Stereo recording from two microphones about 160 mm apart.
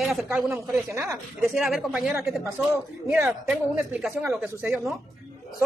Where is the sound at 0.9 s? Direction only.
20° right (ahead or behind).